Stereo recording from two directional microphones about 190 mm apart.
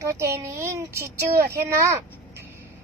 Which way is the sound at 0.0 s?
15° right (ahead or behind).